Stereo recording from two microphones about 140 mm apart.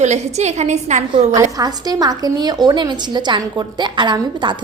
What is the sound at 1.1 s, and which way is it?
A woman's voice, 25° right (ahead or behind).